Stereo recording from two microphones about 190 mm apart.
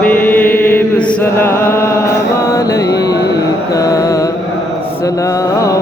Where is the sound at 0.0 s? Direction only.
10° left (ahead or behind).